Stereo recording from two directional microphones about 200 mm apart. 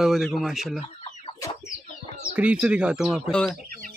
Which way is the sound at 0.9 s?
30° left (ahead or behind).